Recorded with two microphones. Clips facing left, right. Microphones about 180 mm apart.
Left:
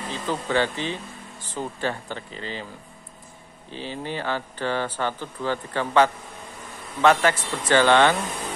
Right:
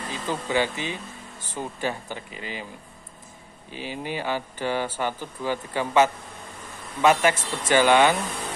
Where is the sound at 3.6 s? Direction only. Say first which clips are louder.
Even; 10° right (ahead or behind).